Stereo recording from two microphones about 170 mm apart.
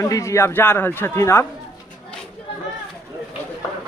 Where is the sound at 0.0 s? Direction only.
20° left (ahead or behind).